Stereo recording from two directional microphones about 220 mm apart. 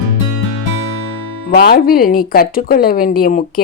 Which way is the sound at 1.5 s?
40° left (ahead or behind).